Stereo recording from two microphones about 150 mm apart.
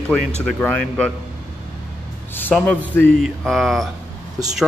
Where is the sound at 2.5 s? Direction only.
10° left (ahead or behind).